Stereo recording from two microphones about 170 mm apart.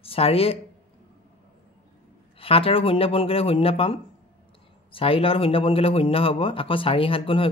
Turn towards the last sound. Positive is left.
turn(degrees=30)  # may be behind; listen again after turning